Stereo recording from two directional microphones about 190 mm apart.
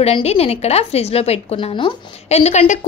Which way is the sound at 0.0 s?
35° left (ahead or behind).